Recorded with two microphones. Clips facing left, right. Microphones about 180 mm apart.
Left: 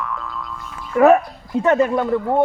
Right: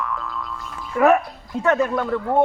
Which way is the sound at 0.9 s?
30° left (ahead or behind).